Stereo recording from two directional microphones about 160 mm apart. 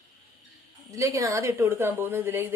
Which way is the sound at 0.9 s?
20° right (ahead or behind).